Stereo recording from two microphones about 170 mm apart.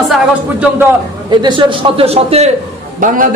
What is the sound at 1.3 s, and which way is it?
A man's voice, 25° right (ahead or behind).